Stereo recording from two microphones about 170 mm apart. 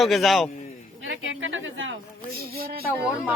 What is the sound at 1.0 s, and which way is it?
A woman's voice, 90° right.